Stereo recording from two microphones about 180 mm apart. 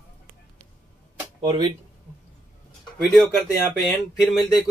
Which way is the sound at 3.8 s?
Centre (ahead or behind).